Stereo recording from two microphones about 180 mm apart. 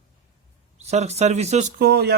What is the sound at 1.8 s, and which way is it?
Speech, 65° right (ahead or behind).